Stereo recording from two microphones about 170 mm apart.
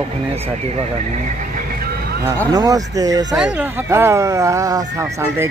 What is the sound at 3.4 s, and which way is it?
Speech, 10° right (ahead or behind).